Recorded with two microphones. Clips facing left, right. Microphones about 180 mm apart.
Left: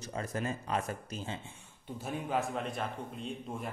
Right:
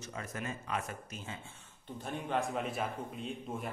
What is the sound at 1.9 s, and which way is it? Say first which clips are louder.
A man's voice: left 1 dB; 5° left (ahead or behind).